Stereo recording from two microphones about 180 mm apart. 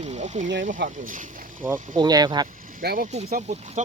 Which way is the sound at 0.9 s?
45° right (ahead or behind).